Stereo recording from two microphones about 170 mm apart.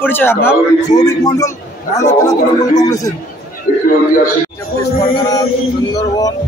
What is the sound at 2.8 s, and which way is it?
Speech, 20° left (ahead or behind).